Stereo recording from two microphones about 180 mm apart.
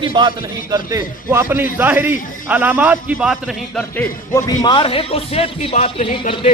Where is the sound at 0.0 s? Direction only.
25° right (ahead or behind); by 3.8 s centre (ahead or behind).